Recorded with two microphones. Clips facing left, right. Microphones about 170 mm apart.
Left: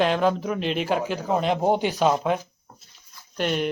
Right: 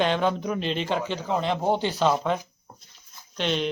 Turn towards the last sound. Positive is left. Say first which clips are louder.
# left 2 dB
turn(degrees=10)  # may be behind; listen again after turning